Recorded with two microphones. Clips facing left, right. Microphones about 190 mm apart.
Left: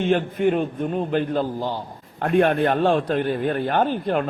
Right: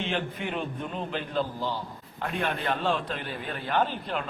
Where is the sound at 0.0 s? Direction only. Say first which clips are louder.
Left 11 dB; 50° left (ahead or behind).